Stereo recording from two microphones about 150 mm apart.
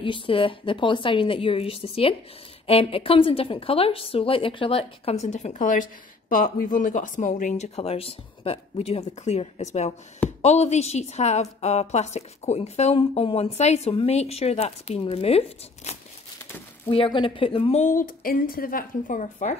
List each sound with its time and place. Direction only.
0.0 s a woman's voice: 35° left (ahead or behind); by 19.5 s 60° left (ahead or behind)